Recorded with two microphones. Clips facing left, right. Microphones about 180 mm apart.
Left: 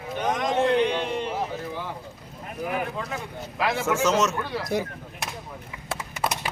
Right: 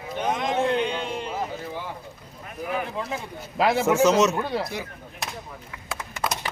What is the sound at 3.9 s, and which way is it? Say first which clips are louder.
Speech: right 3 dB; 10° right (ahead or behind).